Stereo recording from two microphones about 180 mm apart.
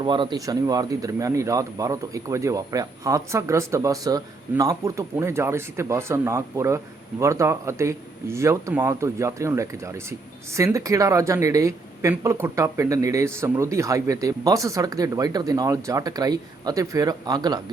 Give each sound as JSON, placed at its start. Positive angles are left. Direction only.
{"t": 0.0, "sound": "speech", "side_deg": -25}